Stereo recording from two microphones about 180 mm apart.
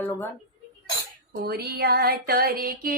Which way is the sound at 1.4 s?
60° right (ahead or behind).